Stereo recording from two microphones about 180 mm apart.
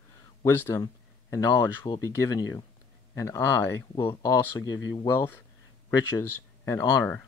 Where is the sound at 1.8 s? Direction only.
20° left (ahead or behind).